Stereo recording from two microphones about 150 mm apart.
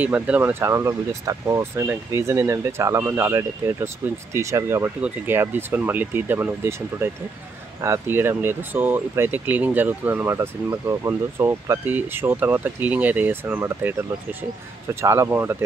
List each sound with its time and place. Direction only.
0.0 s speech: 10° right (ahead or behind)
15.0 s speech: 15° right (ahead or behind)